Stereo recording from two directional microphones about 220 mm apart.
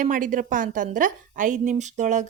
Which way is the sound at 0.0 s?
35° right (ahead or behind).